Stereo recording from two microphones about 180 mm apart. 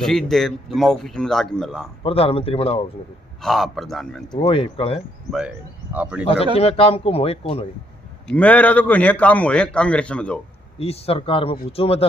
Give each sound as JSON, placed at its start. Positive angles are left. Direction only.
{"t": 0.0, "sound": "speech", "side_deg": 0}
{"t": 2.0, "sound": "speech", "side_deg": 30}
{"t": 3.3, "sound": "speech", "side_deg": 0}
{"t": 4.3, "sound": "speech", "side_deg": 30}
{"t": 5.9, "sound": "speech", "side_deg": -5}
{"t": 6.6, "sound": "speech", "side_deg": 35}
{"t": 8.3, "sound": "a man's voice", "side_deg": 10}
{"t": 10.8, "sound": "speech", "side_deg": 35}